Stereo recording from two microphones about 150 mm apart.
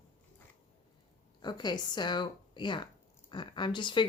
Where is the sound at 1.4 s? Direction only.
30° left (ahead or behind).